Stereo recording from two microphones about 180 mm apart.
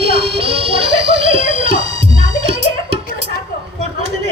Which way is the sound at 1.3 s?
30° right (ahead or behind).